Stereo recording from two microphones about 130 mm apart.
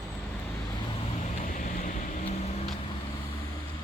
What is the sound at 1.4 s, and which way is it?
Boat, 80° left.